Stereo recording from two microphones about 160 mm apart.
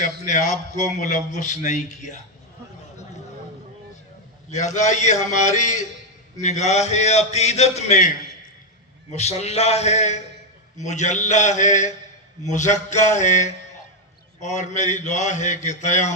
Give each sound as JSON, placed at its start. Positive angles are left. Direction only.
{"t": 0.0, "sound": "a man's voice", "side_deg": 50}
{"t": 4.5, "sound": "a man's voice", "side_deg": 50}
{"t": 9.1, "sound": "a man's voice", "side_deg": 40}